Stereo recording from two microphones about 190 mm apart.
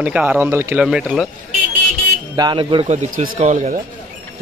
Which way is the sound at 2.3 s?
25° right (ahead or behind).